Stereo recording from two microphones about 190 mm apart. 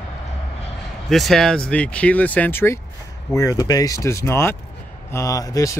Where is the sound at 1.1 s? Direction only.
Centre (ahead or behind); by 5.7 s 20° left (ahead or behind).